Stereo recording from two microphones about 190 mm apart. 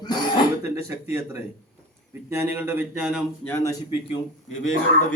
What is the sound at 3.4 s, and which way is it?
Speech, 10° left (ahead or behind).